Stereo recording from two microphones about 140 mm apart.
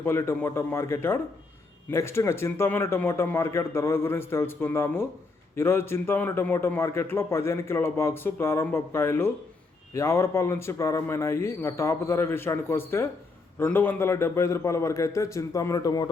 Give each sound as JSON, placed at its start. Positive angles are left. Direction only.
{"t": 0.0, "sound": "a man's voice", "side_deg": 15}